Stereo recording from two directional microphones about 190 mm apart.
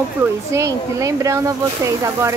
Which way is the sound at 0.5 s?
15° right (ahead or behind).